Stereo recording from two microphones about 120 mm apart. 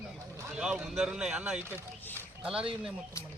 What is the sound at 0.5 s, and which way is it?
Speech, 5° right (ahead or behind).